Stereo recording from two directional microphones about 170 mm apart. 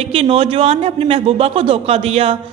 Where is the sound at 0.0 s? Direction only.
35° right (ahead or behind).